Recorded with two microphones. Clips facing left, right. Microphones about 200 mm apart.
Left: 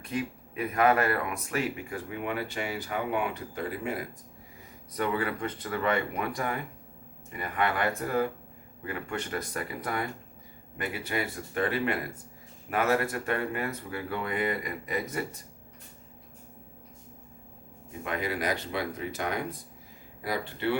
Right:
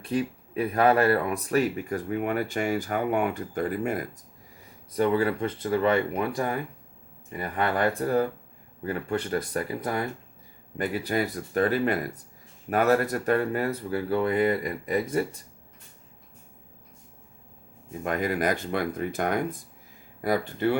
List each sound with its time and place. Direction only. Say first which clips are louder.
0.0 s speech: right 5 dB; 35° right (ahead or behind); by 4.0 s 50° right (ahead or behind)
4.9 s speech: right 6 dB; 30° right (ahead or behind)
18.0 s speech: right 5 dB; 45° right (ahead or behind)